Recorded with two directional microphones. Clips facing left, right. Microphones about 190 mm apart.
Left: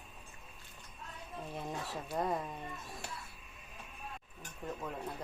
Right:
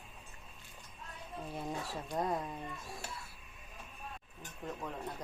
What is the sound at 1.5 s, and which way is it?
Speech, centre (ahead or behind).